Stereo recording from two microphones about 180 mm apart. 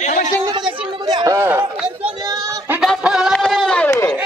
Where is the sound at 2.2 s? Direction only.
20° right (ahead or behind).